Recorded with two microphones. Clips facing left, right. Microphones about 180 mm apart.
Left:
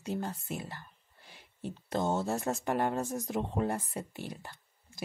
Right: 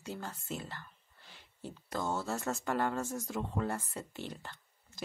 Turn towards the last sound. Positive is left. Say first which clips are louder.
# left 1 dB
turn(degrees=10)  # may be behind; listen again after turning